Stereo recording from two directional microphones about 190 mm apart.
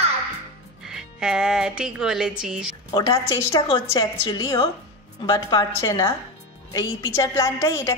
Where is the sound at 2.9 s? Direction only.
20° left (ahead or behind).